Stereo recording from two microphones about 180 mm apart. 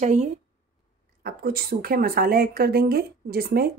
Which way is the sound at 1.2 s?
55° right (ahead or behind).